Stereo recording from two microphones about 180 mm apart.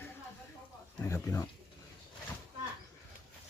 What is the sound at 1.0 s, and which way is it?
Speech, 10° left (ahead or behind).